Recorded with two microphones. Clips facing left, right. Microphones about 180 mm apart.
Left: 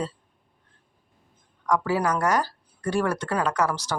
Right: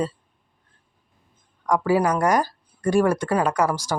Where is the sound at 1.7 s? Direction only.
10° right (ahead or behind).